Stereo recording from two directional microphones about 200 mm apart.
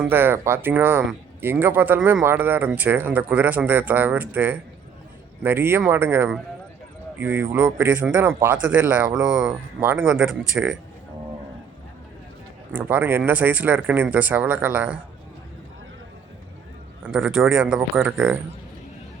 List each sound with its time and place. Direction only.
0.0 s speech: 10° right (ahead or behind)
12.7 s speech: 10° right (ahead or behind)
17.1 s speech: centre (ahead or behind)